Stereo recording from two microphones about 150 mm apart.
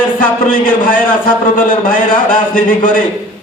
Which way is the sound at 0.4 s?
65° left (ahead or behind).